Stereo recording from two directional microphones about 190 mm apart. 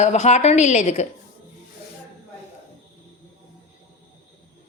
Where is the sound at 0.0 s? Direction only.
35° left (ahead or behind).